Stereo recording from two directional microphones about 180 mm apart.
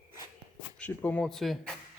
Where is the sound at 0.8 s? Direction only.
10° left (ahead or behind).